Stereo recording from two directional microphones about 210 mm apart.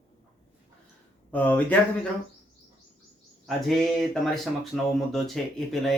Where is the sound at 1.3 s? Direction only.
5° left (ahead or behind).